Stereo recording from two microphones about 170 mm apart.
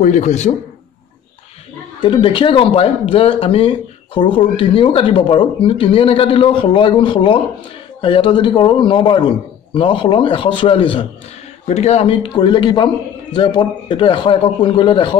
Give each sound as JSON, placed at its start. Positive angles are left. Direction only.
{"t": 0.0, "sound": "a man's voice", "side_deg": 45}
{"t": 2.0, "sound": "a man's voice", "side_deg": 25}